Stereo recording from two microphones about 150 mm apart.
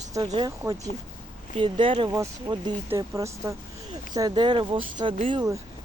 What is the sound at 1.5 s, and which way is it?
Speech, 35° right (ahead or behind).